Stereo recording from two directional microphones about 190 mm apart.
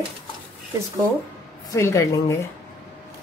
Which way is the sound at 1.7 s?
15° left (ahead or behind).